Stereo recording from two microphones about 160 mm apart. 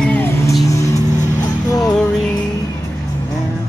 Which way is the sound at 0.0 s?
10° left (ahead or behind).